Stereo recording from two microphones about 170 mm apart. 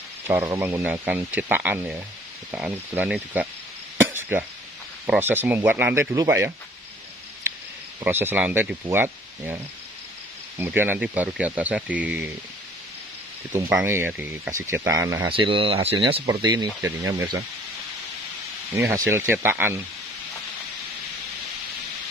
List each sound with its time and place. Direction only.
0.3 s speech: 15° right (ahead or behind)
4.0 s a sound: 10° right (ahead or behind)
5.0 s speech: 10° right (ahead or behind)
8.0 s speech: 10° right (ahead or behind)
10.6 s speech: 10° right (ahead or behind)
13.5 s speech: 10° right (ahead or behind)
15.2 s speech: 30° right (ahead or behind)
18.8 s speech: 15° right (ahead or behind)